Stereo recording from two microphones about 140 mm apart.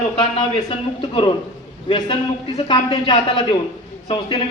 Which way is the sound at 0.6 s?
40° left (ahead or behind).